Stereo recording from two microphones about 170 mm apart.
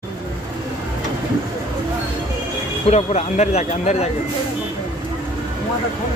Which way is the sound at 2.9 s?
40° left (ahead or behind).